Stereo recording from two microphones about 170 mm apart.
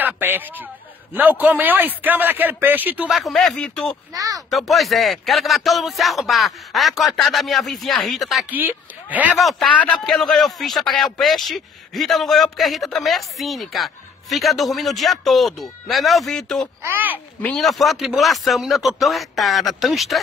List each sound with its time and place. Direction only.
0.0 s a sound: 10° right (ahead or behind)
1.1 s speech: 10° right (ahead or behind)
4.1 s speech: 20° right (ahead or behind)
4.5 s a man's voice: centre (ahead or behind)
16.8 s speech: 10° right (ahead or behind)
17.4 s a man's voice: 5° left (ahead or behind)